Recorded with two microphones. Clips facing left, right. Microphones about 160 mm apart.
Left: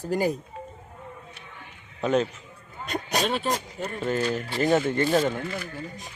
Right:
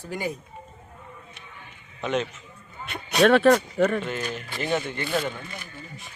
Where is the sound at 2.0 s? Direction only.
35° left (ahead or behind).